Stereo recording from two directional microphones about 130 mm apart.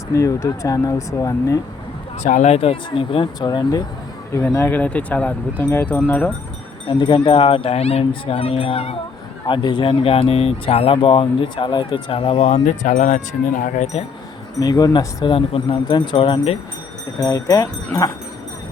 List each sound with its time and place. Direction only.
0.1 s speech: 25° left (ahead or behind)
2.2 s speech: 65° left (ahead or behind); by 3.8 s 35° left (ahead or behind)
4.4 s speech: 15° left (ahead or behind)
6.8 s speech: 40° left (ahead or behind)
9.5 s speech: 40° left (ahead or behind)
12.6 s speech: 75° left (ahead or behind)
14.6 s speech: 25° left (ahead or behind); by 16.6 s 40° left (ahead or behind)
17.2 s speech: 25° left (ahead or behind)